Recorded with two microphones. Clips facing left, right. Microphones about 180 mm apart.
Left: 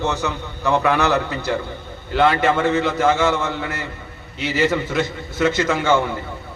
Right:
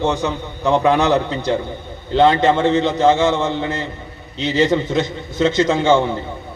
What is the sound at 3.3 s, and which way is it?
A man's voice, 30° right (ahead or behind).